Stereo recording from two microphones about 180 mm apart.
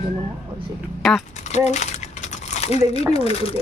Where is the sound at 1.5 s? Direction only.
40° left (ahead or behind).